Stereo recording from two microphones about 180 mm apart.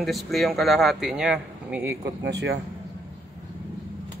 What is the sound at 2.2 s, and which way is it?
Speech, 75° right (ahead or behind).